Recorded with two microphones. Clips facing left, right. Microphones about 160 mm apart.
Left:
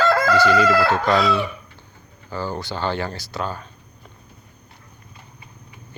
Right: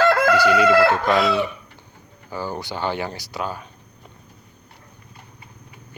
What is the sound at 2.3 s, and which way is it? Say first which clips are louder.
Speech: left 1 dB; 15° right (ahead or behind).